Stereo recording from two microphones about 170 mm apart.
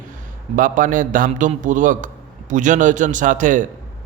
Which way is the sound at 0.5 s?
50° right (ahead or behind).